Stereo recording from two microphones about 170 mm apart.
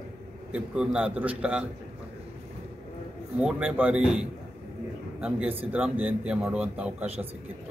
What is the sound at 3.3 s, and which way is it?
A man's voice, 5° right (ahead or behind).